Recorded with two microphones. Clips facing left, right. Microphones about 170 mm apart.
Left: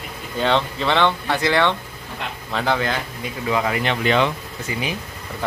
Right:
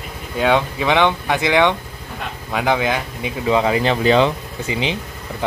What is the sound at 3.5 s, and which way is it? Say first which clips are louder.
Speech: right 5 dB; 25° right (ahead or behind).